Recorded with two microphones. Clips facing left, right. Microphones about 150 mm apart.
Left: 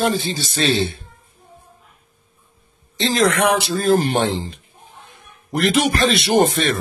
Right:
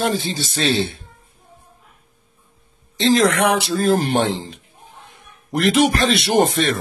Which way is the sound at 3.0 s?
Centre (ahead or behind).